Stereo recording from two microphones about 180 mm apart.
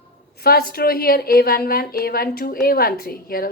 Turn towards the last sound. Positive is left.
turn(degrees=55)  # may be behind; listen again after turning